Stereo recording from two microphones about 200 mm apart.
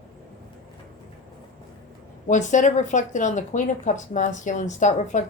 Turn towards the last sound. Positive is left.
turn(degrees=35)  # may be behind; listen again after turning